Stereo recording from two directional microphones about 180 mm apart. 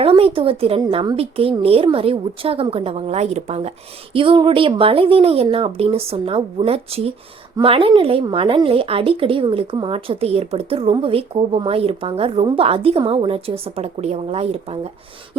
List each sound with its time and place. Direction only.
0.0 s speech: 30° right (ahead or behind)